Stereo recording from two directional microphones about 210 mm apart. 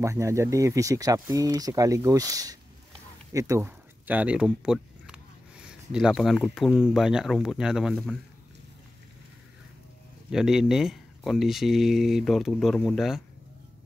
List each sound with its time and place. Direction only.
0.0 s speech: 15° right (ahead or behind)
10.3 s speech: centre (ahead or behind)